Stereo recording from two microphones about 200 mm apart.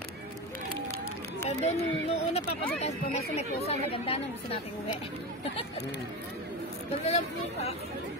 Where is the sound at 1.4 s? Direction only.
35° left (ahead or behind).